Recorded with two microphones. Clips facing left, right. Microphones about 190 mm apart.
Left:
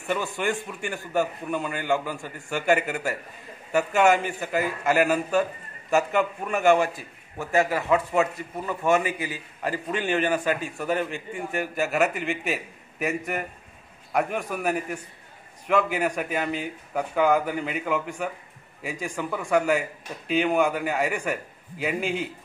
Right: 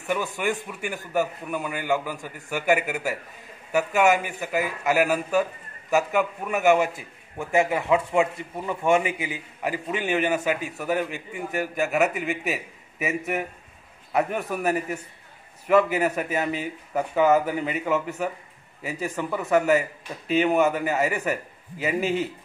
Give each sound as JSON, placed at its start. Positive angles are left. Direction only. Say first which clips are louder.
{"t": 0.0, "sound": "a man's voice", "louder": "right 1 dB", "side_deg": -15}
{"t": 6.8, "sound": "a man's voice", "louder": "right 1 dB", "side_deg": -20}